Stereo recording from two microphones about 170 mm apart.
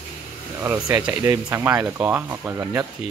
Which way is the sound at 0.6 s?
15° right (ahead or behind).